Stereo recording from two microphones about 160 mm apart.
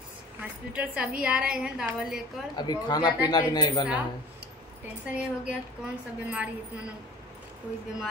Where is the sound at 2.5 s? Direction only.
25° left (ahead or behind).